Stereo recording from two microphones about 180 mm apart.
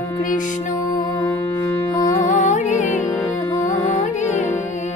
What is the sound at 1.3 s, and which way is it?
Music, 10° left (ahead or behind).